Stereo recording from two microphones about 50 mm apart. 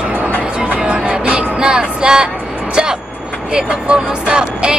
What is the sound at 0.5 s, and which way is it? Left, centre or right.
Music, centre.